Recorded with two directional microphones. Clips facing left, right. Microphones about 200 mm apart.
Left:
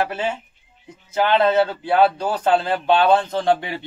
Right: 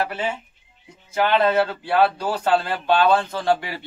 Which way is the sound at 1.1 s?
25° left (ahead or behind).